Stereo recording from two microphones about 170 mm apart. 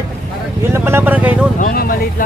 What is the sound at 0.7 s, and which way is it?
Vehicle, 15° right (ahead or behind).